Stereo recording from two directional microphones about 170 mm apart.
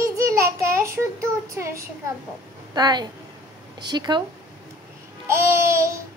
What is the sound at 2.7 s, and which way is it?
A woman's voice, 25° right (ahead or behind).